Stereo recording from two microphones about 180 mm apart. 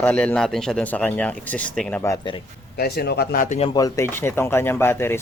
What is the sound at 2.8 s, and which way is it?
Speech, 60° left (ahead or behind).